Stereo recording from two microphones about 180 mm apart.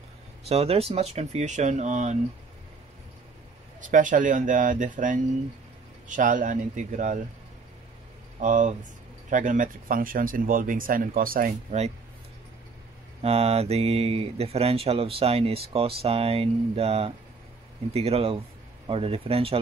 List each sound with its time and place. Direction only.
0.5 s speech: 35° right (ahead or behind)
3.9 s speech: 45° right (ahead or behind)
8.4 s speech: 45° right (ahead or behind)
13.2 s speech: 35° right (ahead or behind)